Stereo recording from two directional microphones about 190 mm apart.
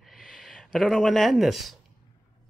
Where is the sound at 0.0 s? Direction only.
Centre (ahead or behind).